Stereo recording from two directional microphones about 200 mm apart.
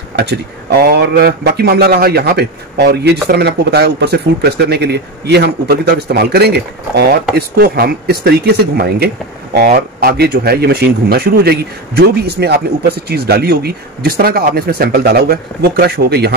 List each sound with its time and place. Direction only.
0.1 s speech: 55° right (ahead or behind)